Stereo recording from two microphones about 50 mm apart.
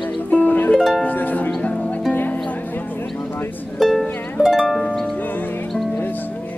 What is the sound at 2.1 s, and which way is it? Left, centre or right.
Music, left.